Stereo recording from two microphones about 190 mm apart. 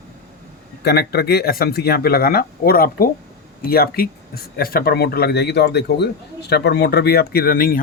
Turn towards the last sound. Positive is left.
turn(degrees=50)  # may be behind; listen again after turning